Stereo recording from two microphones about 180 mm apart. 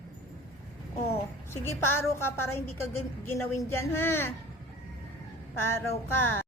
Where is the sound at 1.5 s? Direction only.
15° left (ahead or behind).